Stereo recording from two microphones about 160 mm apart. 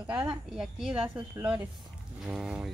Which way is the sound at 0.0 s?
10° right (ahead or behind).